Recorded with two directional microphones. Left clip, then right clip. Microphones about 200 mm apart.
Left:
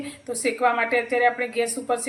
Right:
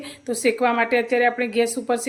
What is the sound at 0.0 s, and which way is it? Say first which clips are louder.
A woman's voice: right 4 dB; 50° right (ahead or behind).